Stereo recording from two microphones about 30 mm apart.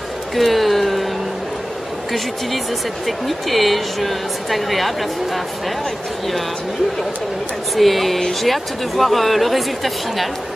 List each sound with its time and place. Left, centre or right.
0.4 s a sound: centre
3.1 s speech: centre
7.7 s speech: centre